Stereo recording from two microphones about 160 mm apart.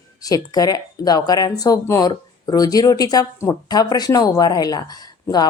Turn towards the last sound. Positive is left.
turn(degrees=25)  # may be behind; listen again after turning